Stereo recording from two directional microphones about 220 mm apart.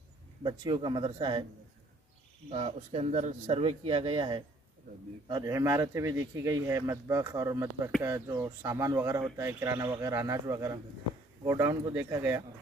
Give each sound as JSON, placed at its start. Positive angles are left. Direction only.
{"t": 0.4, "sound": "speech", "side_deg": -20}
{"t": 2.5, "sound": "speech", "side_deg": -25}